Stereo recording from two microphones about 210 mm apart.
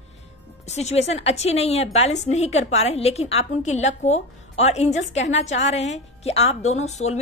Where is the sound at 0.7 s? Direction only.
30° left (ahead or behind).